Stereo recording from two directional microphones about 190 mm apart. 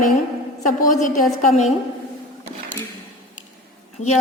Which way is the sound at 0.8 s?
45° left (ahead or behind).